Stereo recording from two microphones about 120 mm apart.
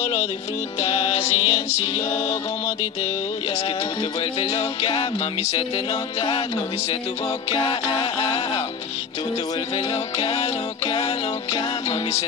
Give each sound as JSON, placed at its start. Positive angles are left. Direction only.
{"t": 0.0, "sound": "music", "side_deg": 60}
{"t": 4.2, "sound": "music", "side_deg": 50}
{"t": 7.5, "sound": "music", "side_deg": 40}
{"t": 10.1, "sound": "music", "side_deg": 50}